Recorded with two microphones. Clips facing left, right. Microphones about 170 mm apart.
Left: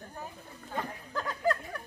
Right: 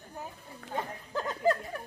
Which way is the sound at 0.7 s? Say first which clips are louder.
Right 1 dB; 20° right (ahead or behind).